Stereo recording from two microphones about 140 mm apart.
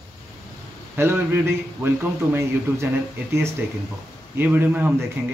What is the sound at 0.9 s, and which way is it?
A man's voice, 15° right (ahead or behind).